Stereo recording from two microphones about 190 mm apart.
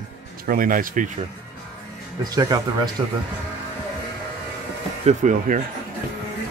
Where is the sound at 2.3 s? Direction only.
20° right (ahead or behind).